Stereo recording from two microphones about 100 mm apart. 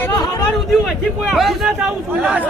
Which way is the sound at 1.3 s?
Centre (ahead or behind).